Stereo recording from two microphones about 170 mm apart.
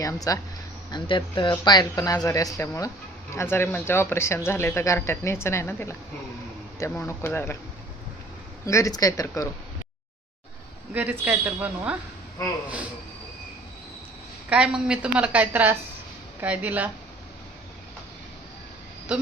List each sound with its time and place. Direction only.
0.0 s speech: 20° left (ahead or behind)
8.6 s speech: 20° left (ahead or behind)
10.9 s a woman's voice: 10° right (ahead or behind)
14.5 s a woman's voice: 5° right (ahead or behind)